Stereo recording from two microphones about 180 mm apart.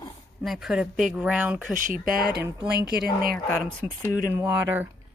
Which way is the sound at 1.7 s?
50° right (ahead or behind).